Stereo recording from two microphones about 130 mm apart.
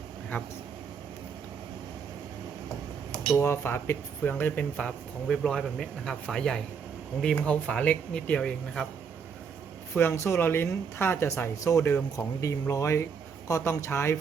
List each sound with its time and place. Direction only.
0.3 s speech: 15° left (ahead or behind)
3.3 s speech: 20° left (ahead or behind)
9.9 s speech: 15° left (ahead or behind)